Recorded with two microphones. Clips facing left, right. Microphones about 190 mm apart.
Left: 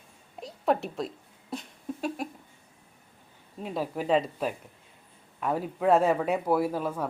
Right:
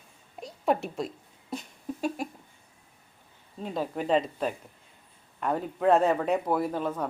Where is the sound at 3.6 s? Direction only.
5° left (ahead or behind).